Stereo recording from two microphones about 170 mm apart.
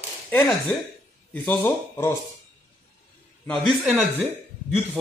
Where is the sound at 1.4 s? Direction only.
15° left (ahead or behind).